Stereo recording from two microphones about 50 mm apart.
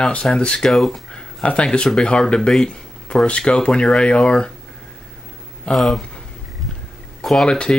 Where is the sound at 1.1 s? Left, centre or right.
Centre.